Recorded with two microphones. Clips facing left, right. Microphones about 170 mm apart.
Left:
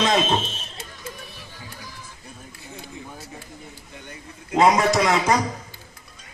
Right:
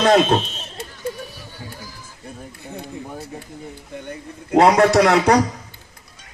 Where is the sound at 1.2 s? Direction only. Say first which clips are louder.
Right 5 dB; 40° right (ahead or behind).